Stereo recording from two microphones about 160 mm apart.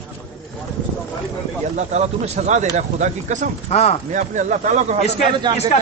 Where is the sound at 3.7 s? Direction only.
45° left (ahead or behind).